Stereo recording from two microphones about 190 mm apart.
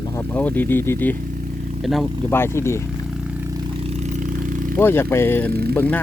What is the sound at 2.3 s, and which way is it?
Speech, 15° left (ahead or behind).